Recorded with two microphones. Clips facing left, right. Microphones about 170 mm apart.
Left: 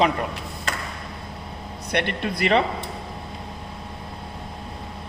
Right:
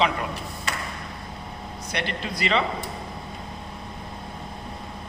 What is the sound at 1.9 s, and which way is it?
Speech, 55° left (ahead or behind).